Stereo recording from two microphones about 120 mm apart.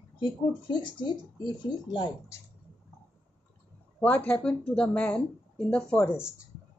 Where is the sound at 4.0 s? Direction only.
10° left (ahead or behind).